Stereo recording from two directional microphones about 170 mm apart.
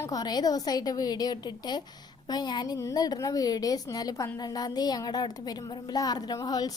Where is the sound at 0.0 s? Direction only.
20° left (ahead or behind).